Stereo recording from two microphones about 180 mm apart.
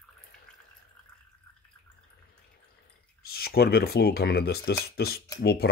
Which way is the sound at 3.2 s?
60° left (ahead or behind).